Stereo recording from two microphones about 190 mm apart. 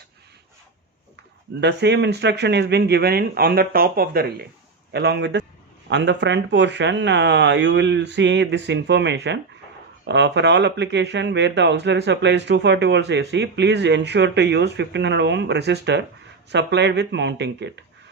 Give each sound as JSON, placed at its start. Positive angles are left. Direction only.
{"t": 1.6, "sound": "speech", "side_deg": -65}